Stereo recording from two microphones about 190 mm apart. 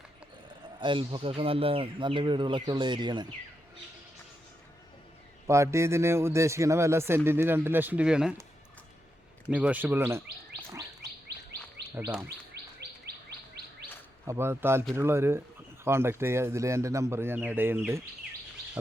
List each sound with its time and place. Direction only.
0.4 s a sound: 25° right (ahead or behind)
1.4 s speech: 30° right (ahead or behind)
5.5 s speech: 15° right (ahead or behind)
9.5 s speech: 5° right (ahead or behind)
12.6 s chirp tone: 60° right (ahead or behind)
14.3 s speech: 15° right (ahead or behind)